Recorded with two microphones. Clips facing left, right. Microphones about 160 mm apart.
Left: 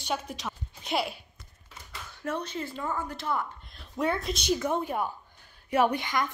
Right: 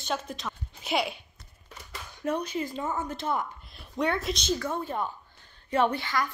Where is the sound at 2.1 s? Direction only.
15° right (ahead or behind).